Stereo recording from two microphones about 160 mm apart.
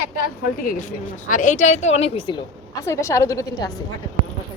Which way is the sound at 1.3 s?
50° left (ahead or behind).